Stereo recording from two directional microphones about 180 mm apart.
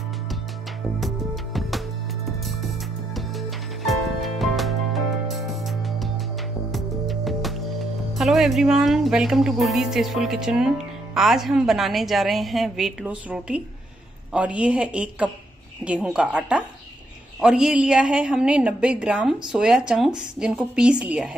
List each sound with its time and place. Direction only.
0.9 s music: centre (ahead or behind)
3.2 s music: centre (ahead or behind)
8.1 s a woman's voice: centre (ahead or behind)